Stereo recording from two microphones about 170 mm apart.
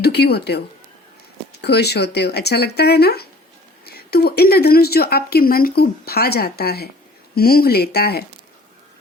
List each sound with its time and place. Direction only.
0.0 s speech: 70° left (ahead or behind)
1.6 s speech: 75° left (ahead or behind)